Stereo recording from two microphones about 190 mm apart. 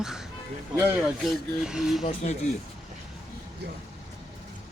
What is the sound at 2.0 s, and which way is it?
Speech, 35° left (ahead or behind).